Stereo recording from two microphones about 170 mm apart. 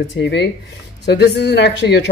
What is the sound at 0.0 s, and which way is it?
Speech, 90° left.